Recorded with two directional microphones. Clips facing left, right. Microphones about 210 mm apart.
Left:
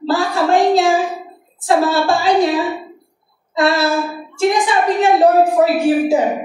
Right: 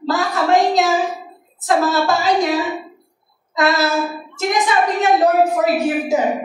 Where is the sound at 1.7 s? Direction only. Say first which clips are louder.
Left 2 dB; 30° left (ahead or behind).